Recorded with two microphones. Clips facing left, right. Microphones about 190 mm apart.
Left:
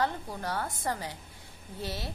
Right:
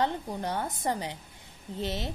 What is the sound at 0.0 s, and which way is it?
A woman's voice, 20° right (ahead or behind).